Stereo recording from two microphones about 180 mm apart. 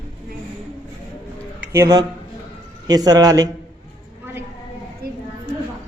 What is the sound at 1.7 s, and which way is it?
Speech, 15° right (ahead or behind).